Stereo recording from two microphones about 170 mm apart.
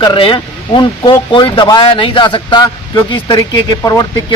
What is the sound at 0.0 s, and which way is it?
Speech, 30° left (ahead or behind).